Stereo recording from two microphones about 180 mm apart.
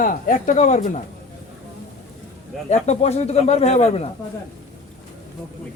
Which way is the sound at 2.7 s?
40° left (ahead or behind).